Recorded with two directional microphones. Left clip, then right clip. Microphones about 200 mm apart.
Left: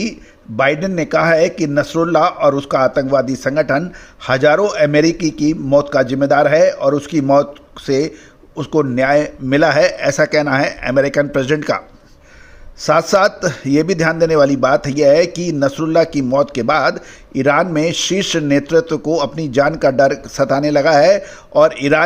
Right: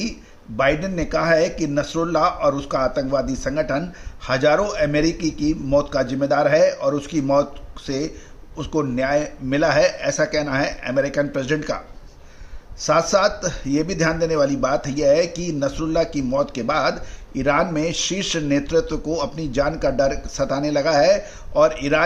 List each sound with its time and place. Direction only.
0.5 s a man's voice: 35° left (ahead or behind)
12.8 s a man's voice: 35° left (ahead or behind)